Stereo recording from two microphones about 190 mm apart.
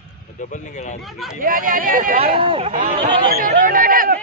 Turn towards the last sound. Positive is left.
turn(degrees=-50)  # may be behind; listen again after turning